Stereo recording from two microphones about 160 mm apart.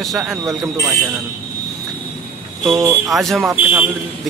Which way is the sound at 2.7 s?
20° right (ahead or behind).